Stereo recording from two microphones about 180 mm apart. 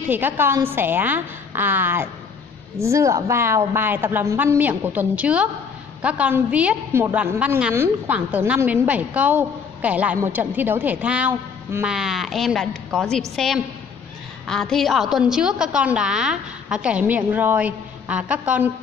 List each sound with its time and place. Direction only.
0.1 s a woman's voice: 10° right (ahead or behind)
14.5 s a woman's voice: centre (ahead or behind)